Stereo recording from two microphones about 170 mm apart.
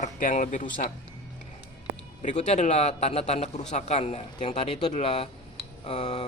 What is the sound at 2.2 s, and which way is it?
Speech, 45° left (ahead or behind).